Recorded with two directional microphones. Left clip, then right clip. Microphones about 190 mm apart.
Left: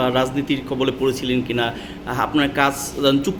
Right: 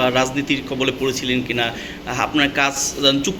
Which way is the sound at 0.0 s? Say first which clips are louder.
Right 2 dB; 20° left (ahead or behind).